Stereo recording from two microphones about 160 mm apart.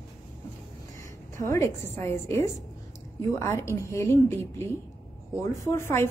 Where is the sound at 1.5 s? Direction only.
15° left (ahead or behind).